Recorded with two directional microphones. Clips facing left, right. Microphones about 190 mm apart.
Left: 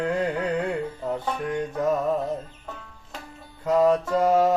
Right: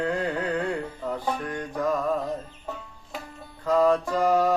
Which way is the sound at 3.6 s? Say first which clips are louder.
Left 1 dB; 25° left (ahead or behind).